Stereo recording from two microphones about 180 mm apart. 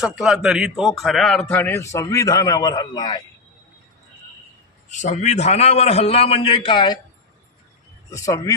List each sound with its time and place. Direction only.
0.0 s a man's voice: centre (ahead or behind); by 3.2 s 25° left (ahead or behind)
4.9 s a man's voice: 40° left (ahead or behind); by 7.0 s 25° left (ahead or behind)
8.1 s a man's voice: 20° left (ahead or behind)